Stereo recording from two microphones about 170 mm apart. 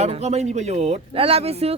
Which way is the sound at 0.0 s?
40° right (ahead or behind).